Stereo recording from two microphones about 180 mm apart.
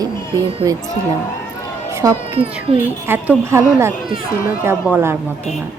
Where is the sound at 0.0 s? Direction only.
20° right (ahead or behind).